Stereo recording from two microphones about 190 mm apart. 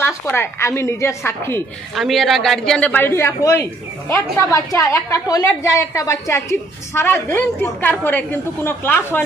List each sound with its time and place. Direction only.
0.0 s a woman's voice: 10° left (ahead or behind)
2.0 s a woman's voice: centre (ahead or behind)